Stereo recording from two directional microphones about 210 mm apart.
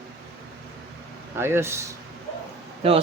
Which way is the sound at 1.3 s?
10° right (ahead or behind).